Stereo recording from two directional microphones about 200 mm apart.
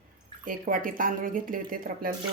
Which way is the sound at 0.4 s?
45° right (ahead or behind).